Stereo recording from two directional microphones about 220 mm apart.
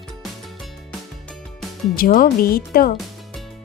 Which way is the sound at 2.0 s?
40° left (ahead or behind).